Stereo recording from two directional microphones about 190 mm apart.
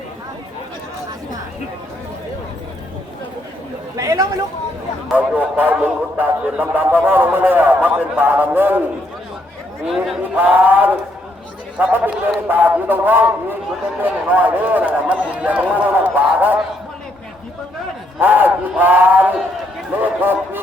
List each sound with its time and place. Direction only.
3.9 s chatter: 15° right (ahead or behind)
5.0 s a man's voice: 10° right (ahead or behind)
9.8 s a man's voice: centre (ahead or behind)
18.2 s a man's voice: 10° right (ahead or behind)